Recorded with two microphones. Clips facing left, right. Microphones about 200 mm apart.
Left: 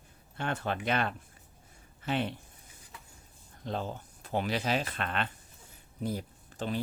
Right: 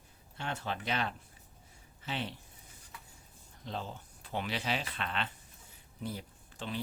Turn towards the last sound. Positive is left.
turn(degrees=45)  # may be behind; listen again after turning